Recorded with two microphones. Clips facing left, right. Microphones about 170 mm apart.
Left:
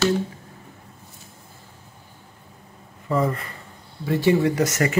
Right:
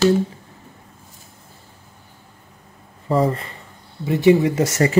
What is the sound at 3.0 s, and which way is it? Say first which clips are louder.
Speech: right 4 dB; 30° right (ahead or behind).